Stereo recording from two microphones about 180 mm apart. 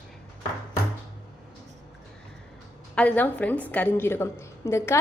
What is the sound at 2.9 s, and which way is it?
A woman's voice, 5° left (ahead or behind).